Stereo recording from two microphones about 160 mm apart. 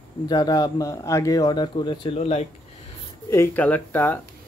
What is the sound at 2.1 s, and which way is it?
Speech, 40° left (ahead or behind).